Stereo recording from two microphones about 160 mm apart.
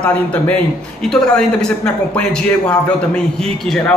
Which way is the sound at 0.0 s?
10° left (ahead or behind).